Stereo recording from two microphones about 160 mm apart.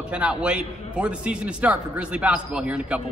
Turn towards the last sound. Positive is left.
turn(degrees=-5)  # may be behind; listen again after turning